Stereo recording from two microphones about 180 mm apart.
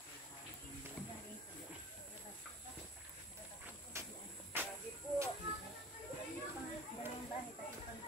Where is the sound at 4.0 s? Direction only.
15° right (ahead or behind).